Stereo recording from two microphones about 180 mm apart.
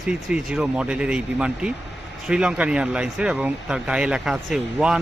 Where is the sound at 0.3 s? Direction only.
5° right (ahead or behind).